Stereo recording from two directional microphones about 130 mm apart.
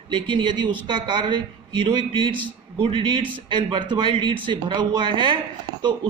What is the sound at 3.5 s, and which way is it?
A man's voice, 40° right (ahead or behind).